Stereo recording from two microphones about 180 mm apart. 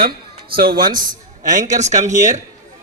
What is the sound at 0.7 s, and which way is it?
Speech, 25° right (ahead or behind).